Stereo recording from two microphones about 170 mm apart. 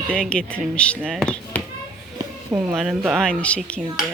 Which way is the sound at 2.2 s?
20° right (ahead or behind).